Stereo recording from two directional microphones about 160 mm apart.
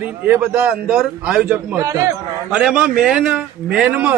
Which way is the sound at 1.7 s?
20° right (ahead or behind).